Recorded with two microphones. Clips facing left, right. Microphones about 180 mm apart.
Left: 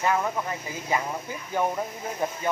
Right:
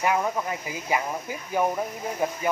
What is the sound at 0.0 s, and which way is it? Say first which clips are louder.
Speech: right 1 dB; 15° right (ahead or behind).